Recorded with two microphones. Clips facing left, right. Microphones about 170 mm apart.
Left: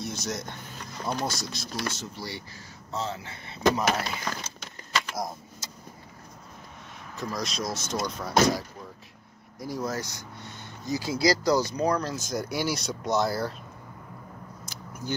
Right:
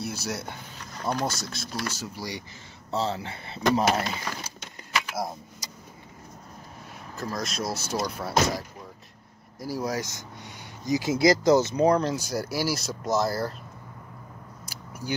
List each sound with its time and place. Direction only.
0.0 s speech: 5° right (ahead or behind)
2.0 s speech: 15° right (ahead or behind)
2.9 s speech: 30° right (ahead or behind)
4.4 s a sound: 10° right (ahead or behind)
7.2 s speech: centre (ahead or behind)
9.6 s speech: 5° right (ahead or behind)
12.3 s speech: 5° right (ahead or behind)
14.7 s vehicle: 10° right (ahead or behind)